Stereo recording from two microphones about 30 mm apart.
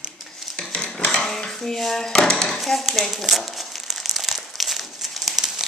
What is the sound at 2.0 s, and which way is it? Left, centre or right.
Speech, centre.